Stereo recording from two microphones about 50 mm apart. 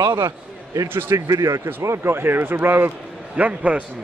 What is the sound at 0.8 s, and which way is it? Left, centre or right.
Speech, right.